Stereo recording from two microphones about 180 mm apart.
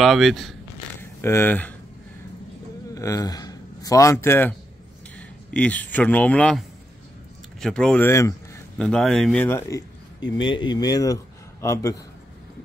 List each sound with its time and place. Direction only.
0.0 s speech: centre (ahead or behind)
1.2 s speech: 15° left (ahead or behind)
2.9 s a man's voice: 20° left (ahead or behind)
7.6 s speech: 5° left (ahead or behind)
8.7 s speech: 5° left (ahead or behind)
10.3 s speech: 25° left (ahead or behind)